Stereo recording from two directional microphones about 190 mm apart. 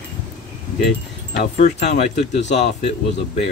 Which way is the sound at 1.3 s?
40° left (ahead or behind).